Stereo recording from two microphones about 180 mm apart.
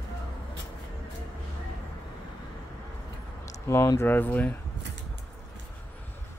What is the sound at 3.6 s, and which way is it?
Speech, 15° left (ahead or behind).